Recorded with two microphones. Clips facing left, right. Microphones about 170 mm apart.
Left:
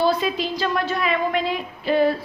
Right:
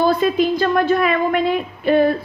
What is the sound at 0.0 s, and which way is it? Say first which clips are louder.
A woman's voice: right 5 dB; 55° right (ahead or behind).